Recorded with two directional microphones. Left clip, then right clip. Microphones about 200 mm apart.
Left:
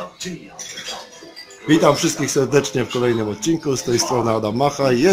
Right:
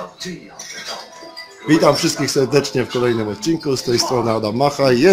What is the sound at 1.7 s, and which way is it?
Speech, 5° right (ahead or behind).